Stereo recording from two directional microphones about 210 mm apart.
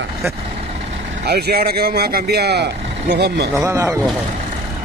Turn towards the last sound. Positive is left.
turn(degrees=-15)  # may be behind; listen again after turning